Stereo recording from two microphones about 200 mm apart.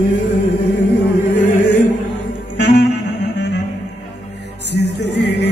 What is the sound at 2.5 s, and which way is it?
Music, 60° left (ahead or behind).